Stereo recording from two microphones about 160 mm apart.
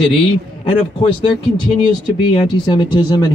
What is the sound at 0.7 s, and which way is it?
A man's voice, 35° left (ahead or behind).